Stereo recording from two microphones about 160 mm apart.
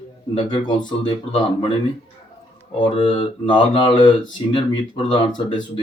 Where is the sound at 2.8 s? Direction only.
30° left (ahead or behind).